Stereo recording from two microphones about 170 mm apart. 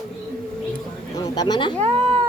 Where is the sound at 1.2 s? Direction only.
25° left (ahead or behind).